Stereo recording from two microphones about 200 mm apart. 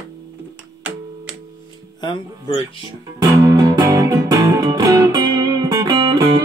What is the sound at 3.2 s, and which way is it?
Music, 20° right (ahead or behind).